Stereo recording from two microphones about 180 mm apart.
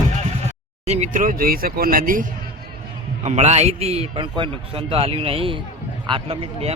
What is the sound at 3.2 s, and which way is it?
Speech, 40° right (ahead or behind).